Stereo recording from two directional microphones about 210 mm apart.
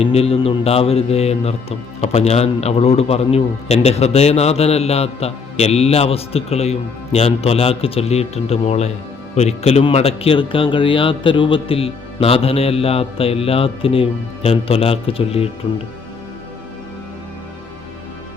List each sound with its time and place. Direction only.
0.0 s speech: 30° left (ahead or behind)